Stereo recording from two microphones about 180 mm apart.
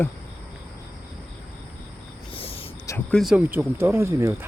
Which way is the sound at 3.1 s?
Centre (ahead or behind).